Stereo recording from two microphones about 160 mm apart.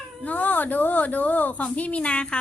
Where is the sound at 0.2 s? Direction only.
10° left (ahead or behind).